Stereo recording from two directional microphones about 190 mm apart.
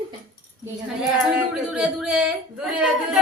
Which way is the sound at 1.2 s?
Centre (ahead or behind).